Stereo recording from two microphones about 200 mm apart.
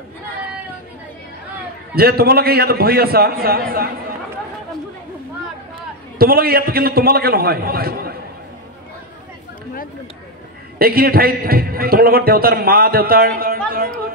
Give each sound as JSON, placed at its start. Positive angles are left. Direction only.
{"t": 2.0, "sound": "a man's voice", "side_deg": -50}
{"t": 6.1, "sound": "a man's voice", "side_deg": -50}
{"t": 10.8, "sound": "a man's voice", "side_deg": -50}